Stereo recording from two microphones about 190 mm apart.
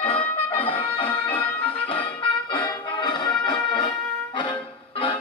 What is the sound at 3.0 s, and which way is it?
Music, 25° left (ahead or behind).